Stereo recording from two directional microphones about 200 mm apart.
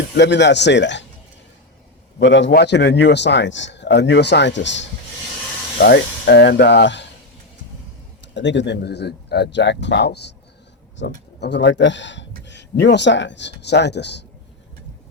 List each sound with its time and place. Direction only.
0.2 s speech: 60° left (ahead or behind)
2.1 s speech: 65° left (ahead or behind)
8.3 s speech: 65° left (ahead or behind)